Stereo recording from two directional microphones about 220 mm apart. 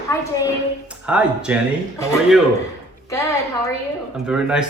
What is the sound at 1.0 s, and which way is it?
Speech, 5° right (ahead or behind).